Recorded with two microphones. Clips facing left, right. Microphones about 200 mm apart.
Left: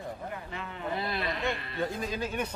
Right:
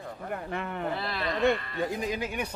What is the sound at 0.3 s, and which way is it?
Speech, 55° right (ahead or behind).